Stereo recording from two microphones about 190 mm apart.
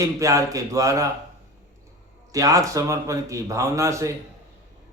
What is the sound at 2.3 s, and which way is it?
A man's voice, 20° right (ahead or behind).